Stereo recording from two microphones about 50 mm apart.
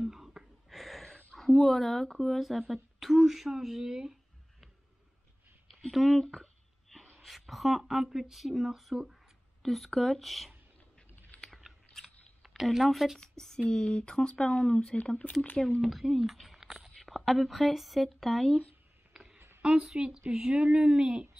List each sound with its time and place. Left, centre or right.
0.0 s a sound: centre
0.7 s a sound: centre
1.7 s speech: centre
5.7 s a woman's voice: centre
12.6 s speech: centre
13.2 s a woman's voice: centre
15.6 s speech: centre
19.6 s speech: centre